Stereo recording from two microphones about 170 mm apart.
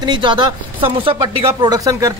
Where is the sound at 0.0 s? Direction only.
30° right (ahead or behind).